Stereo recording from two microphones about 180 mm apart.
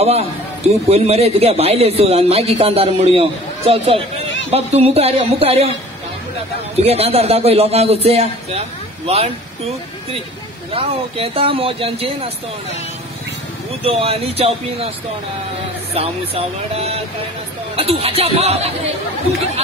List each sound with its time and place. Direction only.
0.0 s a man's voice: 35° right (ahead or behind)
6.8 s a man's voice: 35° right (ahead or behind)
10.7 s a man's voice: 30° right (ahead or behind)
13.8 s a man's voice: 30° right (ahead or behind)
15.9 s a man's voice: 35° right (ahead or behind)